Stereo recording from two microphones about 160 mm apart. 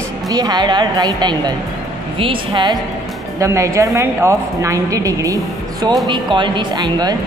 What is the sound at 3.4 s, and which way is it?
A woman's voice, 20° right (ahead or behind).